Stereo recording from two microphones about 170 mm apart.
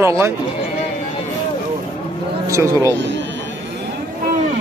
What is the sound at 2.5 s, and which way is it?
Speech, 15° right (ahead or behind).